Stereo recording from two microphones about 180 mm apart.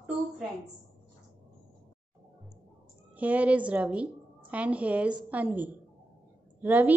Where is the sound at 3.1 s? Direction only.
10° right (ahead or behind).